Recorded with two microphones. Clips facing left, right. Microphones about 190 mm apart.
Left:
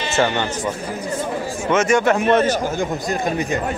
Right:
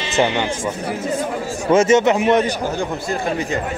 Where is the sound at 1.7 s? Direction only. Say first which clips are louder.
Right 3 dB; 25° right (ahead or behind).